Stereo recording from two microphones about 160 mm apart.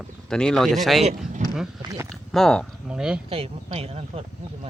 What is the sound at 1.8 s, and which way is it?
Speech, 25° right (ahead or behind).